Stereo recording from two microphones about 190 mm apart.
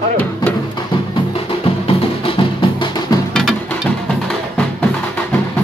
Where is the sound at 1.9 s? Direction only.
30° left (ahead or behind).